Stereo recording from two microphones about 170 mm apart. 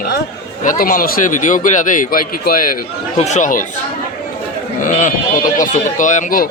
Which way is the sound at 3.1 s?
45° left (ahead or behind).